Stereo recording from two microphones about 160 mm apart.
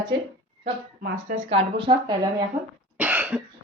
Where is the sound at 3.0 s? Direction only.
10° right (ahead or behind).